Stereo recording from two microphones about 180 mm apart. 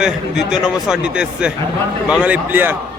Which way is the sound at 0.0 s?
5° right (ahead or behind).